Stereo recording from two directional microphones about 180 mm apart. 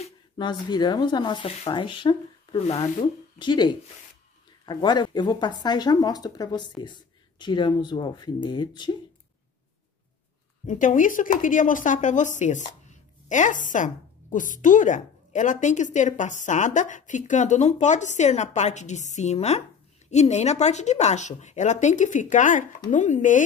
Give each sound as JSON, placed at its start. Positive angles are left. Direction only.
{"t": 0.0, "sound": "speech", "side_deg": 25}
{"t": 10.7, "sound": "a woman's voice", "side_deg": 45}